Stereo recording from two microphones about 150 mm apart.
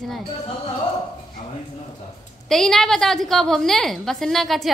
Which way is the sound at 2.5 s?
Centre (ahead or behind).